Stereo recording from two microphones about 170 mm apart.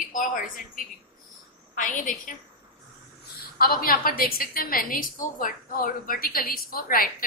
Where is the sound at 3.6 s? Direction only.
60° left (ahead or behind).